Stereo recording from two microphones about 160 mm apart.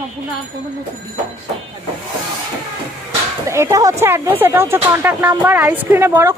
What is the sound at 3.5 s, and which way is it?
Speech, 20° right (ahead or behind).